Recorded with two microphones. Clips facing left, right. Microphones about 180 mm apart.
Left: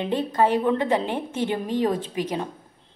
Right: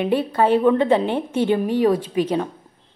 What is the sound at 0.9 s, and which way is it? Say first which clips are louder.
A woman's voice: right 5 dB; 20° right (ahead or behind).